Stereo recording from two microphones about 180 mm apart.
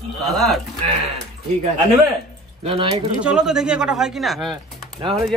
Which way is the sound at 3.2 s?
5° right (ahead or behind).